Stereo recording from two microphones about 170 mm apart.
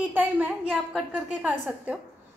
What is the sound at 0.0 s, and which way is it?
A woman's voice, 10° right (ahead or behind).